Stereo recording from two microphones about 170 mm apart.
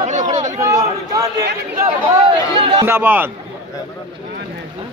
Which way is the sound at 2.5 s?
30° right (ahead or behind).